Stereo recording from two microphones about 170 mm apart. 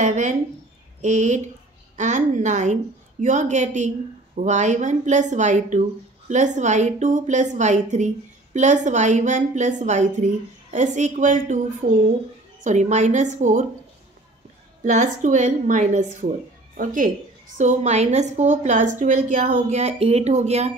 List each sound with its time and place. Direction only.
0.0 s speech: 45° right (ahead or behind)
12.6 s speech: 45° right (ahead or behind)
14.8 s speech: 45° right (ahead or behind)